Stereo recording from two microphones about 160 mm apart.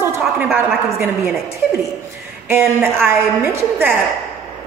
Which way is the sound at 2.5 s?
15° right (ahead or behind).